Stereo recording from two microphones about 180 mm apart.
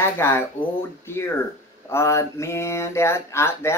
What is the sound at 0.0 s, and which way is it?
Speech, 15° left (ahead or behind).